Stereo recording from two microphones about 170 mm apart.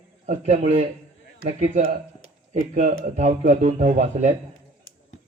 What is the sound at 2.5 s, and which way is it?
A man's voice, 45° right (ahead or behind).